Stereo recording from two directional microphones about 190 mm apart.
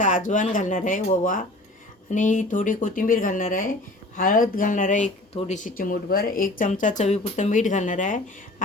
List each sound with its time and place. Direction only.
0.0 s speech: 40° left (ahead or behind)